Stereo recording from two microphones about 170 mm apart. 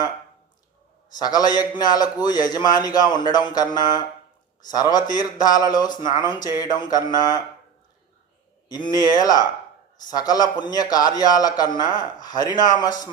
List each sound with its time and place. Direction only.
1.2 s a man's voice: 25° left (ahead or behind)
8.7 s a man's voice: 25° left (ahead or behind)